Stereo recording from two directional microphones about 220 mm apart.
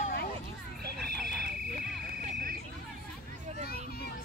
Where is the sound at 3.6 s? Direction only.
45° left (ahead or behind).